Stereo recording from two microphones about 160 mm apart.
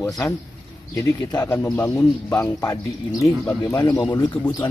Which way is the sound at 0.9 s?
20° left (ahead or behind).